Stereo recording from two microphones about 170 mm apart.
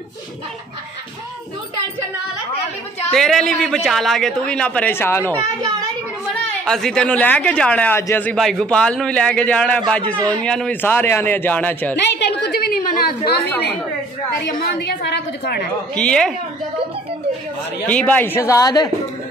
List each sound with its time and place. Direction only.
3.1 s a man's voice: centre (ahead or behind)
5.4 s a child's voice: 20° right (ahead or behind)
6.6 s speech: 5° left (ahead or behind)
12.0 s a sound: 90° left; by 13.3 s 60° left (ahead or behind)
14.4 s a woman's voice: 75° left (ahead or behind)
15.9 s a man's voice: 5° left (ahead or behind)
17.8 s speech: 10° left (ahead or behind)